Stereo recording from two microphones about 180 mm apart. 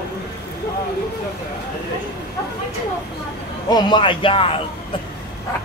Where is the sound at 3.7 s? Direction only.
25° left (ahead or behind).